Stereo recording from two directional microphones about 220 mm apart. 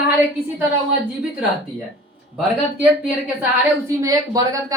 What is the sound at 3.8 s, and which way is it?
Speech, 15° right (ahead or behind).